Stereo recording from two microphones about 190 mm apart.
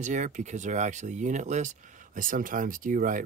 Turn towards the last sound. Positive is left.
turn(degrees=-45)  # may be behind; listen again after turning